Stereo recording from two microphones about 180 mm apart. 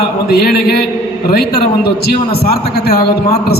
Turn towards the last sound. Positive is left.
turn(degrees=60)  # may be behind; listen again after turning